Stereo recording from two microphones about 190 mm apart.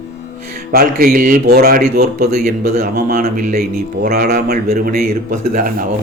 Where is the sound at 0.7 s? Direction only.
50° right (ahead or behind).